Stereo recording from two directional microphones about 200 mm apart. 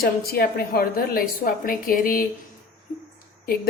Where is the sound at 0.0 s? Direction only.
50° left (ahead or behind).